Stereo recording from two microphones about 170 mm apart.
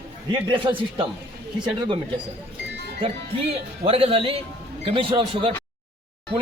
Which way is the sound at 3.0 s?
35° right (ahead or behind).